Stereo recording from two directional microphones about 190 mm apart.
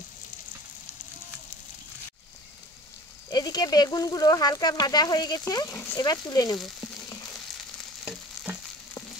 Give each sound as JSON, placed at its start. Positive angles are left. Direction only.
{"t": 3.3, "sound": "speech", "side_deg": 20}
{"t": 6.8, "sound": "frying", "side_deg": 20}
{"t": 8.0, "sound": "frying", "side_deg": -5}